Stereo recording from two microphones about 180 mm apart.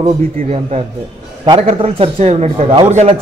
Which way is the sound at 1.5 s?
35° right (ahead or behind).